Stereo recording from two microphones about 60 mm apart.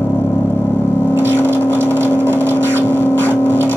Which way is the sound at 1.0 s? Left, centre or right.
Right.